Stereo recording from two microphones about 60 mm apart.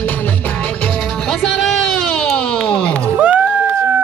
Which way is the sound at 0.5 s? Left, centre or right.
Centre.